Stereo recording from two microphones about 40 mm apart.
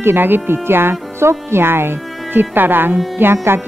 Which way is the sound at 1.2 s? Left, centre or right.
Right.